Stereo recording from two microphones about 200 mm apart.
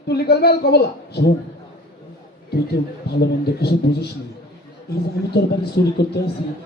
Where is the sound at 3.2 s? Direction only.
55° left (ahead or behind).